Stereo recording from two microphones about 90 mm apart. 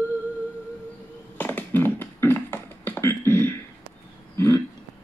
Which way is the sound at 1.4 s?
20° left (ahead or behind).